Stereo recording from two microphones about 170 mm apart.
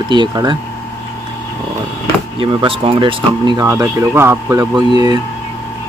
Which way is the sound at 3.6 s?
15° right (ahead or behind).